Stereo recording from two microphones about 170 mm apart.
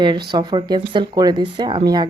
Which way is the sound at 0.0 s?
25° right (ahead or behind).